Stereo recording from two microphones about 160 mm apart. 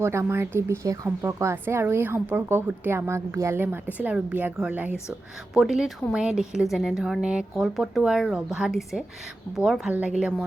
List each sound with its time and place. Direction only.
0.0 s a woman's voice: 15° right (ahead or behind)